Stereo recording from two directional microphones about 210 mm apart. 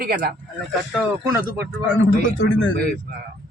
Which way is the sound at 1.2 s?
15° right (ahead or behind).